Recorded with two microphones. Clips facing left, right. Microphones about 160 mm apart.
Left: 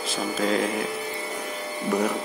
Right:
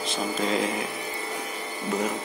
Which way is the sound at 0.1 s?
Centre (ahead or behind).